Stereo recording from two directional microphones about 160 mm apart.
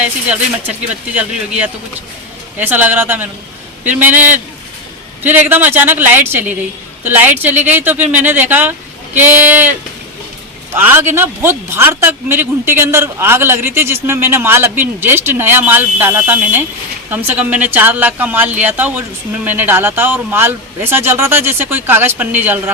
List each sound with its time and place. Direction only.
0.0 s speech: 10° right (ahead or behind)
10.9 s speech: 15° right (ahead or behind)